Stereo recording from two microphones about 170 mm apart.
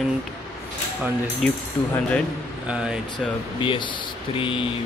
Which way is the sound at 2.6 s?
5° right (ahead or behind).